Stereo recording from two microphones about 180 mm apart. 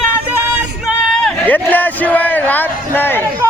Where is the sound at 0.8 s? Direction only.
Centre (ahead or behind).